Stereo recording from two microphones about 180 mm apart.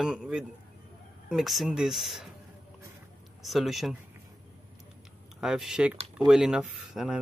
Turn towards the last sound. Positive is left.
turn(degrees=0)  # may be behind; listen again after turning